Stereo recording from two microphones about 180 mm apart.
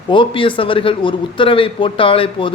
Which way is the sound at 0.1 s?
30° left (ahead or behind).